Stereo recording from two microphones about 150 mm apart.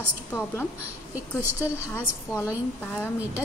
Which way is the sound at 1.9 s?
20° left (ahead or behind).